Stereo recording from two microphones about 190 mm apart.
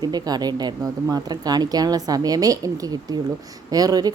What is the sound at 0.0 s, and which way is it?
Speech, 20° right (ahead or behind).